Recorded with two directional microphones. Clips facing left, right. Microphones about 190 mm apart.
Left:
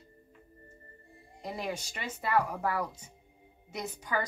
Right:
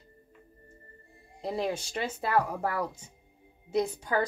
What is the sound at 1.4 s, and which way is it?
Speech, 30° right (ahead or behind).